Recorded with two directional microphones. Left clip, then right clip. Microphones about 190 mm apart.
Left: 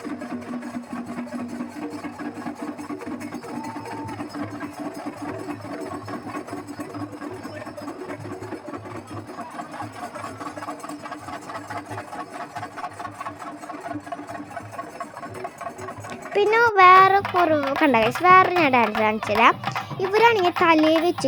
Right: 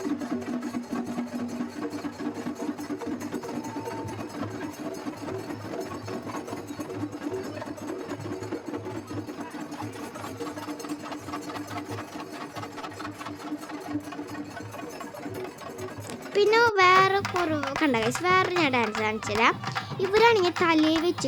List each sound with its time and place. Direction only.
16.3 s a child's voice: 25° left (ahead or behind)